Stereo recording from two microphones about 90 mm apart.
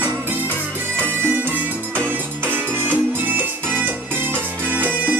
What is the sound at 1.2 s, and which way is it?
Music, 20° right (ahead or behind).